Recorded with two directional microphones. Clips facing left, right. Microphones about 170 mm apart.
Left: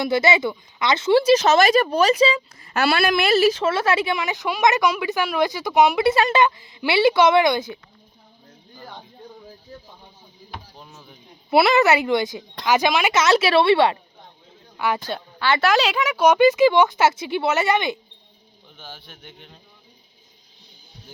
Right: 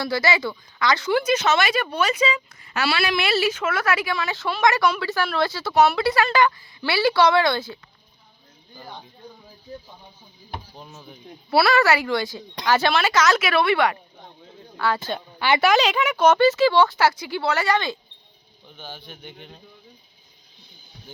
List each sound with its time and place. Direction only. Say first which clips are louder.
0.0 s speech: left 4 dB; 20° left (ahead or behind)
2.7 s a woman's voice: left 4 dB; 50° left (ahead or behind); by 7.8 s 15° left (ahead or behind)
10.8 s speech: right 3 dB; centre (ahead or behind)
11.5 s a woman's voice: left 2 dB; 20° left (ahead or behind)
14.8 s speech: even; 15° left (ahead or behind)
15.4 s a woman's voice: right 1 dB; 15° right (ahead or behind)
15.7 s a woman's voice: even; 5° left (ahead or behind)
18.8 s speech: right 3 dB; 5° left (ahead or behind)